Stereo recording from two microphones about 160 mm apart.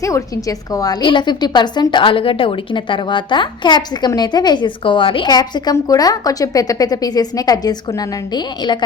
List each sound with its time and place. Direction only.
0.0 s a woman's voice: 20° left (ahead or behind)